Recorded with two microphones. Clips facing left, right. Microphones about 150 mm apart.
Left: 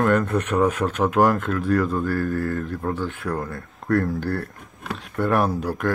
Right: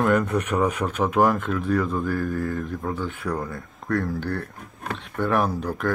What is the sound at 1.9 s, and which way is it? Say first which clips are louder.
Mantra: left 2 dB; 5° right (ahead or behind).